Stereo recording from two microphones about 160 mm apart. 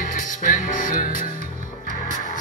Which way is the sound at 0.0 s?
60° left (ahead or behind).